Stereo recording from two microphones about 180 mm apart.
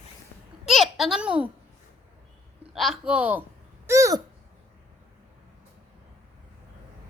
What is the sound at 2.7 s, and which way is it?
Speech, centre (ahead or behind).